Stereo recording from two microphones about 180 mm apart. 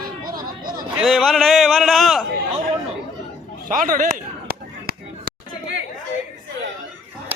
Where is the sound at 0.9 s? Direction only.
Centre (ahead or behind).